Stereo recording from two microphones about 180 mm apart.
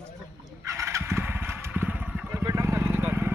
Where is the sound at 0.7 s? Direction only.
15° right (ahead or behind).